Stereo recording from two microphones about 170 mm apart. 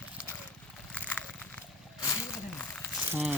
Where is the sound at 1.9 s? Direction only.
20° left (ahead or behind).